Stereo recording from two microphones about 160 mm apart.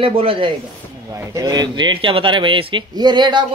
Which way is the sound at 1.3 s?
25° right (ahead or behind).